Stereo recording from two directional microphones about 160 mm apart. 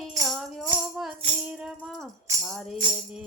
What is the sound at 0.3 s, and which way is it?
Music, centre (ahead or behind).